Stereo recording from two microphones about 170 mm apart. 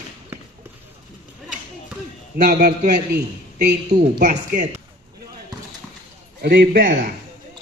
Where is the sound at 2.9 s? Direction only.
70° right (ahead or behind).